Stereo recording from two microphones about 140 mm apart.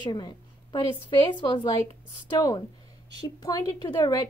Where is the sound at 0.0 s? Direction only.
30° left (ahead or behind).